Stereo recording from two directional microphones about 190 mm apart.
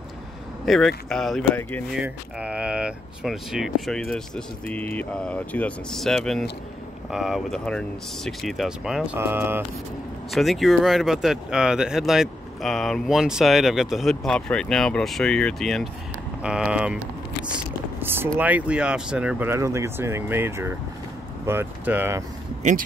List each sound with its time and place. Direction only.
0.7 s speech: centre (ahead or behind)
2.0 s speech: 5° right (ahead or behind)
10.3 s speech: centre (ahead or behind)
22.6 s speech: 40° right (ahead or behind)